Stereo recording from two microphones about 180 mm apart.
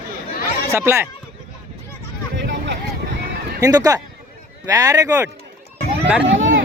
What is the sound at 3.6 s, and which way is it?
Speech, 20° right (ahead or behind).